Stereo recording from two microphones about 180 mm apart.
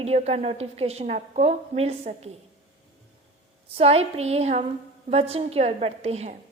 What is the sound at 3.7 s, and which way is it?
A woman's voice, 35° right (ahead or behind).